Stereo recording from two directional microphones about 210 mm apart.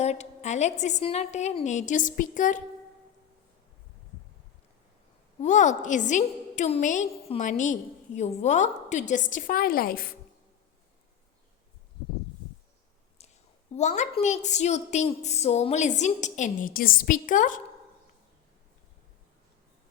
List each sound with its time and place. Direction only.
0.0 s a woman's voice: 30° left (ahead or behind)
5.4 s a woman's voice: 35° left (ahead or behind)
13.2 s a sound: 30° left (ahead or behind)
13.7 s a woman's voice: 35° left (ahead or behind)